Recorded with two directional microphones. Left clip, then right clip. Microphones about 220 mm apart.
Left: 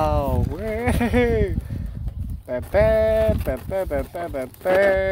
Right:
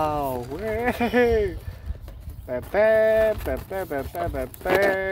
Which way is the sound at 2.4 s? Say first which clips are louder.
Left 1 dB; 35° left (ahead or behind).